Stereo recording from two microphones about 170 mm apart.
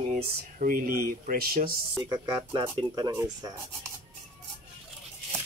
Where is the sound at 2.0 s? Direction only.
25° right (ahead or behind).